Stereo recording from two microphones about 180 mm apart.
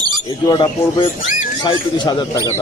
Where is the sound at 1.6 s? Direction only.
25° left (ahead or behind).